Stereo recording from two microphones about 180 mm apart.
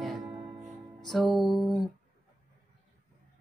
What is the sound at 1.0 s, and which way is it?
Speech, centre (ahead or behind).